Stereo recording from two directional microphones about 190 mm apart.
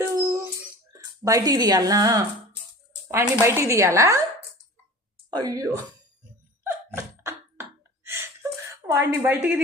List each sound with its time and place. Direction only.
0.0 s dog: 15° right (ahead or behind)
0.9 s speech: 20° right (ahead or behind)
5.3 s speech: 20° right (ahead or behind)
6.7 s a sound: 15° right (ahead or behind)
8.9 s speech: 15° right (ahead or behind)